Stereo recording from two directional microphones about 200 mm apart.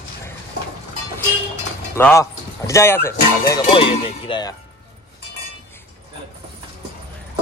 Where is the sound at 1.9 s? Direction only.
15° left (ahead or behind).